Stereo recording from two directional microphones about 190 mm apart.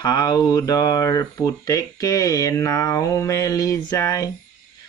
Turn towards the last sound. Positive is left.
turn(degrees=15)  # may be behind; listen again after turning